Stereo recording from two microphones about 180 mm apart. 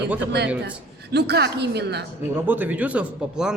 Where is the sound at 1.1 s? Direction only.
65° right (ahead or behind).